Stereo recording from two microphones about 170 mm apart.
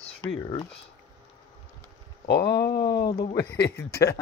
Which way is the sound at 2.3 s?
80° left.